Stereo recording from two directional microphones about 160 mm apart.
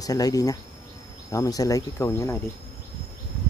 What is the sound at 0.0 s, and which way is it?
Speech, 20° left (ahead or behind).